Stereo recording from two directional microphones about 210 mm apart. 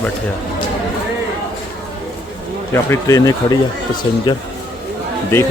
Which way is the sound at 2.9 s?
15° left (ahead or behind).